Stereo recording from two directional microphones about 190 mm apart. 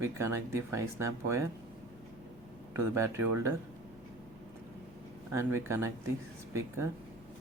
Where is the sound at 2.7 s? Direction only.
15° right (ahead or behind).